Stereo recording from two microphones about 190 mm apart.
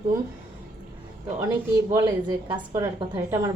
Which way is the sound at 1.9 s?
15° right (ahead or behind).